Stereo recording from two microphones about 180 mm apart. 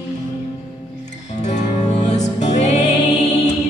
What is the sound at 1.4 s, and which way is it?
Music, 40° left (ahead or behind).